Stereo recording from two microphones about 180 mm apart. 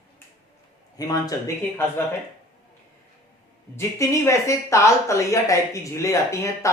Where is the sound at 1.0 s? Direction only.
20° left (ahead or behind).